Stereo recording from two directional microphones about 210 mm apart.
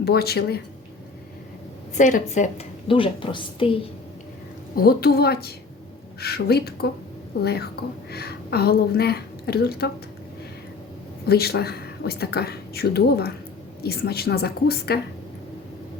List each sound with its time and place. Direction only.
0.0 s a woman's voice: 50° left (ahead or behind)
2.0 s a woman's voice: 35° left (ahead or behind)
4.7 s a woman's voice: 45° left (ahead or behind)
11.3 s a woman's voice: 50° left (ahead or behind)